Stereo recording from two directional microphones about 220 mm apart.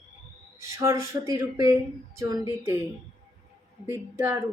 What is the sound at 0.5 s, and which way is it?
Speech, 10° right (ahead or behind).